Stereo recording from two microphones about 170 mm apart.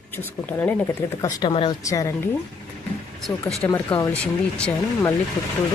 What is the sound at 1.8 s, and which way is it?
Speech, 20° left (ahead or behind).